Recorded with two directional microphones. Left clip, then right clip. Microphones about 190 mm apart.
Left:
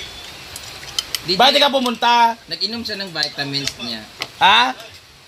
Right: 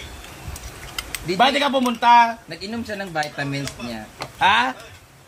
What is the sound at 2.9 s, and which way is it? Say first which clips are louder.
Speech: left 2 dB; 5° left (ahead or behind).